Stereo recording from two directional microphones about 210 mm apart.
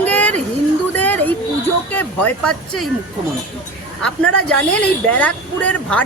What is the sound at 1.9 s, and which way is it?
Speech, 5° left (ahead or behind).